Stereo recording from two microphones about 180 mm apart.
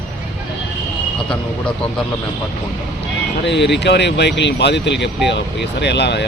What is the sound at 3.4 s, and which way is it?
Speech, 75° left (ahead or behind).